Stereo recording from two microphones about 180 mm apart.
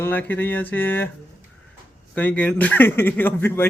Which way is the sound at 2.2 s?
10° left (ahead or behind).